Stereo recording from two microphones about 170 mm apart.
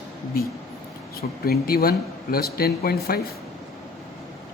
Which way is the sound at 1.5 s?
60° left (ahead or behind).